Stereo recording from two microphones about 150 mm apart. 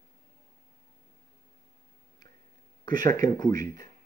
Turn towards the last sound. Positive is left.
turn(degrees=25)  # may be behind; listen again after turning